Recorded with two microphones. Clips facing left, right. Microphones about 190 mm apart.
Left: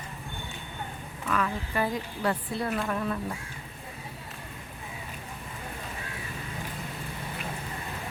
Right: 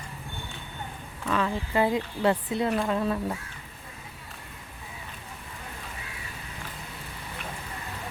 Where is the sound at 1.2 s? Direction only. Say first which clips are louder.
Right 2 dB; 30° right (ahead or behind).